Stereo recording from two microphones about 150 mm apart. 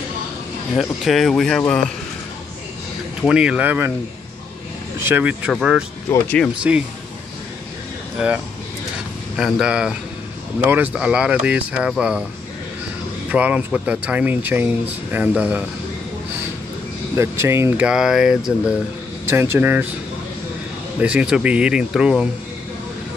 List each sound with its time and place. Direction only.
0.7 s speech: centre (ahead or behind)
3.2 s speech: 5° right (ahead or behind)
5.0 s speech: 10° right (ahead or behind)
6.0 s speech: 20° left (ahead or behind)
6.7 s speech: 10° right (ahead or behind)
9.4 s speech: 5° right (ahead or behind)
13.3 s speech: 10° right (ahead or behind)
17.1 s speech: 20° right (ahead or behind); by 18.4 s 5° right (ahead or behind)
19.2 s speech: 15° right (ahead or behind)
21.0 s speech: 5° right (ahead or behind)